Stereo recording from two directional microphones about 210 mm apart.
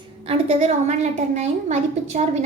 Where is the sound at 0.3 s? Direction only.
30° right (ahead or behind).